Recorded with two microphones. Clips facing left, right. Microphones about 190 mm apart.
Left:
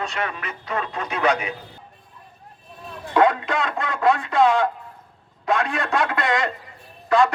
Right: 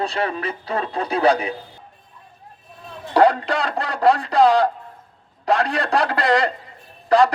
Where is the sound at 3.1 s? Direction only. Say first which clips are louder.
Right 2 dB; 35° right (ahead or behind).